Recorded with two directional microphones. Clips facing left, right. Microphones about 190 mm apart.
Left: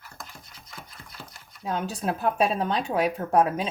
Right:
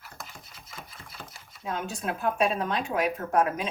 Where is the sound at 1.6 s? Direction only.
35° left (ahead or behind).